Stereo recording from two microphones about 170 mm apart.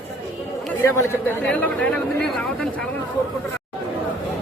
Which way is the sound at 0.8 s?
15° left (ahead or behind).